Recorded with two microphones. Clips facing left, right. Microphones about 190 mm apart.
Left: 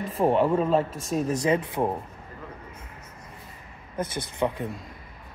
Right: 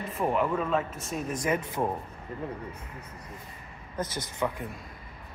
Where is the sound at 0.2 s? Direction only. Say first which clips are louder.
Left 6 dB; 30° left (ahead or behind).